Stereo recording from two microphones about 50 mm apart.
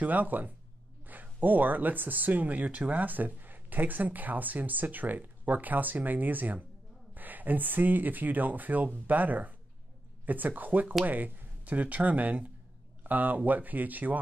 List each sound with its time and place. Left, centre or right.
0.0 s speech: right